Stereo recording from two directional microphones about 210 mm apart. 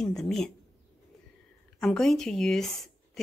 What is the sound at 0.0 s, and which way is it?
Speech, centre (ahead or behind).